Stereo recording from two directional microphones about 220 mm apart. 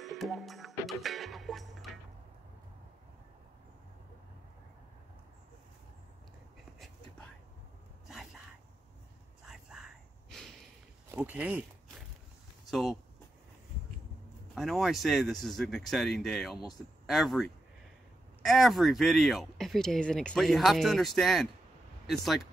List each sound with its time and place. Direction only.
0.0 s music: centre (ahead or behind)
9.5 s whispering: centre (ahead or behind)
11.1 s speech: 5° right (ahead or behind)
14.5 s speech: centre (ahead or behind)